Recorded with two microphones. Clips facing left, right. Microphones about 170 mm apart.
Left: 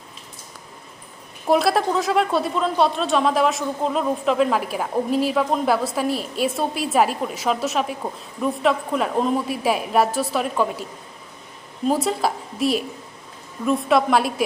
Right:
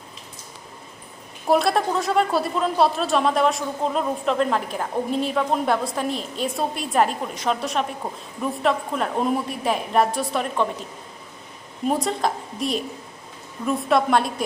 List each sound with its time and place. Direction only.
1.5 s speech: centre (ahead or behind)
11.9 s speech: 5° left (ahead or behind)